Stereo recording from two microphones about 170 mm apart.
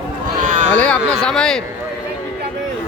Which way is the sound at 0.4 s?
45° right (ahead or behind).